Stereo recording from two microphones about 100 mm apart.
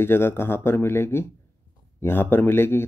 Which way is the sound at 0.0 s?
25° left (ahead or behind).